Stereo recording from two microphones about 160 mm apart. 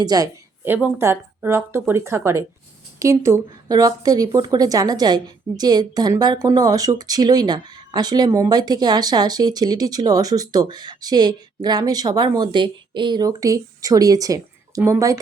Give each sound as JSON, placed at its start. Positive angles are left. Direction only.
{"t": 0.0, "sound": "speech", "side_deg": -25}
{"t": 0.6, "sound": "speech", "side_deg": -15}